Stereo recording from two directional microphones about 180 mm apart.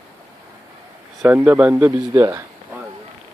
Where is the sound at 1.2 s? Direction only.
10° right (ahead or behind).